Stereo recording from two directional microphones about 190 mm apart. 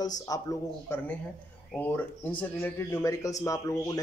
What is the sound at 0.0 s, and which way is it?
Speech, 20° left (ahead or behind).